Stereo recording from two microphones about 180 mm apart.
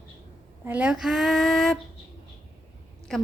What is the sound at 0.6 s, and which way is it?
A woman's voice, 10° right (ahead or behind).